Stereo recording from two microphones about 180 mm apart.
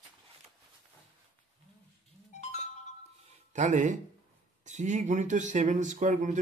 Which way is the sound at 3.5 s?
45° right (ahead or behind).